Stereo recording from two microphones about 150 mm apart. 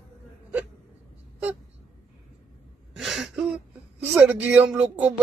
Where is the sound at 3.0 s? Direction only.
Centre (ahead or behind).